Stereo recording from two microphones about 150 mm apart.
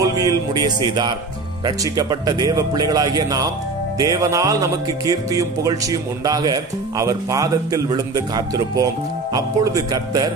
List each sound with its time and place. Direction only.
0.0 s music: 25° right (ahead or behind)